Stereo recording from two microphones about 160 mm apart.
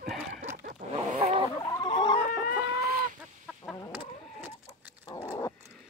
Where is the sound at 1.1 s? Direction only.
35° right (ahead or behind).